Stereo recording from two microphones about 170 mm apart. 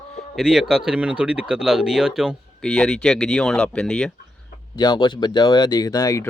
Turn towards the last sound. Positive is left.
turn(degrees=20)  # may be behind; listen again after turning